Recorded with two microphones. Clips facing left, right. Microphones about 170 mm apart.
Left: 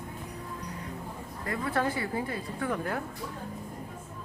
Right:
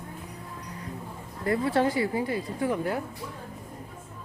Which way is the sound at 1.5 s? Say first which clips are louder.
Right 6 dB; 25° right (ahead or behind).